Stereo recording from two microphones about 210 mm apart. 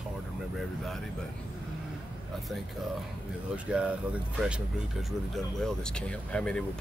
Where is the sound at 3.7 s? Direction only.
5° right (ahead or behind).